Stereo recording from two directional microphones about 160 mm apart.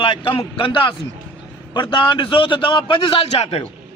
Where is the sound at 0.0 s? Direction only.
35° left (ahead or behind).